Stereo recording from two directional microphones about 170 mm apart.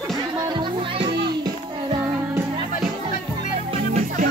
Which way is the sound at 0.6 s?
25° right (ahead or behind).